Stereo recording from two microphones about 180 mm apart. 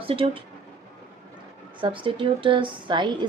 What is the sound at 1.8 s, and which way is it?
A woman's voice, 30° right (ahead or behind).